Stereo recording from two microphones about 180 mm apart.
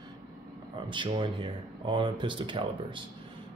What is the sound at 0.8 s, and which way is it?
Speech, 25° right (ahead or behind).